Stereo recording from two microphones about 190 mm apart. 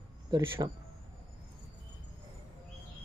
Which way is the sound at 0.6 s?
25° right (ahead or behind).